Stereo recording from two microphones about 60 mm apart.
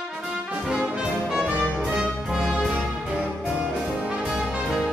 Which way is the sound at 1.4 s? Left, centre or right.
Right.